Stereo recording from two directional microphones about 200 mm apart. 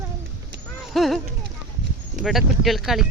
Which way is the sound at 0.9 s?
Centre (ahead or behind).